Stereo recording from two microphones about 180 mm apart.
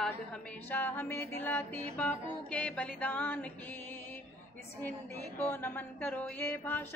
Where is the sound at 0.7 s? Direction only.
10° left (ahead or behind).